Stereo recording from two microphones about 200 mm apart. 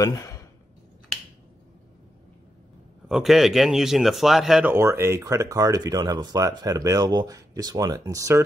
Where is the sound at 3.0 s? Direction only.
Centre (ahead or behind).